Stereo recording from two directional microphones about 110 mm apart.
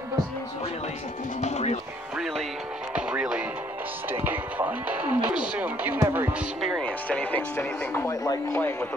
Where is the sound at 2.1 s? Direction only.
Centre (ahead or behind).